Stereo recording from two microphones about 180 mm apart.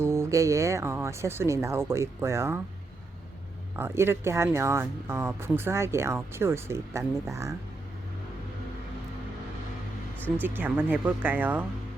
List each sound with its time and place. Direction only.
0.0 s speech: 15° right (ahead or behind)
3.8 s speech: 10° right (ahead or behind)
10.4 s speech: 10° right (ahead or behind)